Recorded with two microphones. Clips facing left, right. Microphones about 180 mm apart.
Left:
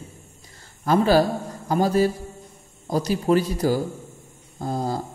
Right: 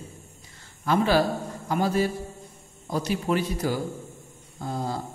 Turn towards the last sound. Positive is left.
turn(degrees=40)  # may be behind; listen again after turning